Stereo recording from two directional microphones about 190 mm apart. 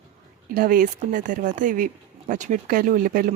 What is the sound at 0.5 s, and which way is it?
Speech, 45° right (ahead or behind).